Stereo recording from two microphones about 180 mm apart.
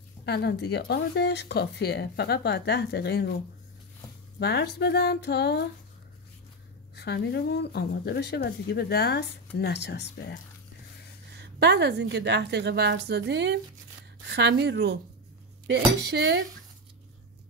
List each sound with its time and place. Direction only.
0.2 s speech: 70° left (ahead or behind)
4.4 s speech: 65° left (ahead or behind)
7.0 s speech: 65° left (ahead or behind)
11.3 s a woman's voice: 70° right (ahead or behind)